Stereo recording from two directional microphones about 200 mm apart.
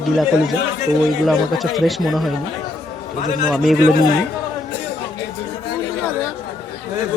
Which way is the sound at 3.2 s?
40° left (ahead or behind).